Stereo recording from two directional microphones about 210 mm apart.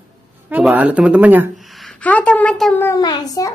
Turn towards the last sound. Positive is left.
turn(degrees=15)  # may be behind; listen again after turning